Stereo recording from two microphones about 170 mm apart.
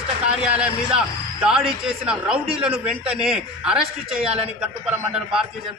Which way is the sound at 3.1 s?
5° right (ahead or behind).